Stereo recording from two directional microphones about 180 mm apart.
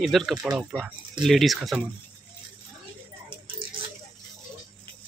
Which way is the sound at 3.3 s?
30° right (ahead or behind).